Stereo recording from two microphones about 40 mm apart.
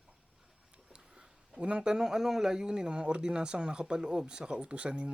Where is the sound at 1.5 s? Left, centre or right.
Right.